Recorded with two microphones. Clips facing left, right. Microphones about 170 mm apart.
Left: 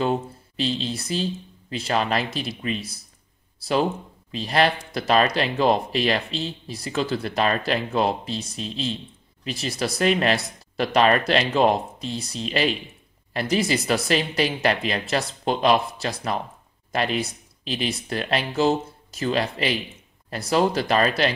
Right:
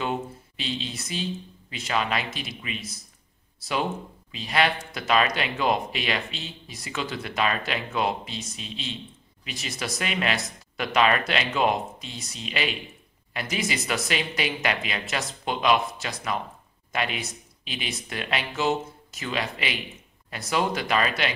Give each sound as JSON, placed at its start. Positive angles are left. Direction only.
{"t": 0.0, "sound": "speech", "side_deg": 35}